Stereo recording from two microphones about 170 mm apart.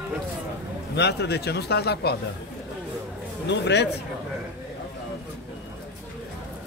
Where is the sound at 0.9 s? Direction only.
80° left.